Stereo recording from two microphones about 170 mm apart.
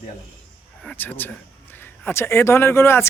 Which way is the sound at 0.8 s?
10° left (ahead or behind).